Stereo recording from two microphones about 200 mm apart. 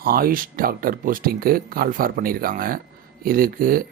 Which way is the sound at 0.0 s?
45° right (ahead or behind).